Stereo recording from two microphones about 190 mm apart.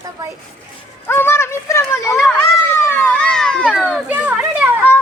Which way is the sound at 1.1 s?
10° left (ahead or behind).